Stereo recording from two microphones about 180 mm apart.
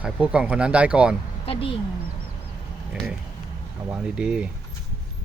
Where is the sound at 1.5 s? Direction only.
30° left (ahead or behind).